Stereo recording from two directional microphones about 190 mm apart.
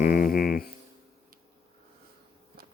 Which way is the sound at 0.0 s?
50° left (ahead or behind).